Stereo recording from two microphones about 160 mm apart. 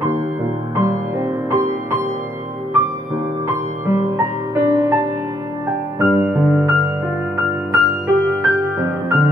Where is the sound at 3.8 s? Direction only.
20° right (ahead or behind).